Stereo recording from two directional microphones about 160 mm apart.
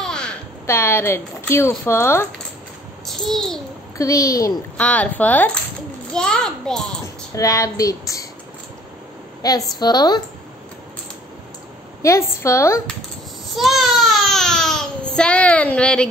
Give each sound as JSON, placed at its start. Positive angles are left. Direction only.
{"t": 0.0, "sound": "a sound", "side_deg": 5}
{"t": 0.7, "sound": "a woman's voice", "side_deg": 15}
{"t": 3.2, "sound": "a child's voice", "side_deg": 5}
{"t": 4.0, "sound": "speech", "side_deg": 20}
{"t": 4.7, "sound": "a woman's voice", "side_deg": 10}
{"t": 7.3, "sound": "speech", "side_deg": 20}
{"t": 9.4, "sound": "speech", "side_deg": 25}
{"t": 12.0, "sound": "a woman's voice", "side_deg": 20}
{"t": 13.5, "sound": "baby cry", "side_deg": 0}
{"t": 15.1, "sound": "a woman's voice", "side_deg": 5}